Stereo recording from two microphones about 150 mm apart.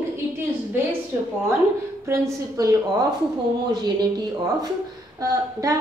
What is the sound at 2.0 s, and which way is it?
A woman's voice, 20° right (ahead or behind).